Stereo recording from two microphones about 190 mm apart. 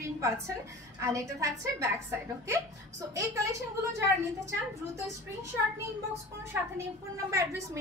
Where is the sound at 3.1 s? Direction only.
15° right (ahead or behind).